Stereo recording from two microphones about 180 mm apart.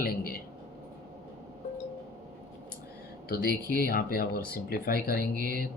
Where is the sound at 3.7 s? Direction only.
55° left (ahead or behind).